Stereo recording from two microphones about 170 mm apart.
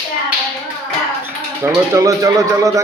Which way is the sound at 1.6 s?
20° right (ahead or behind).